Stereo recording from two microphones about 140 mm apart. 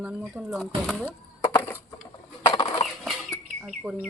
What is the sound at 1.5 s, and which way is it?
Wood, 15° left (ahead or behind).